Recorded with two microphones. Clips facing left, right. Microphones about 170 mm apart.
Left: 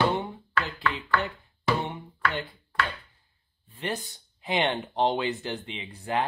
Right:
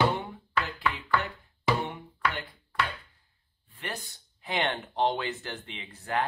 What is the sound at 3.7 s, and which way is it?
Speech, 20° left (ahead or behind).